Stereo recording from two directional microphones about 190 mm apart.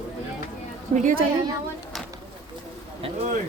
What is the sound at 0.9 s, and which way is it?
Speech, 40° right (ahead or behind).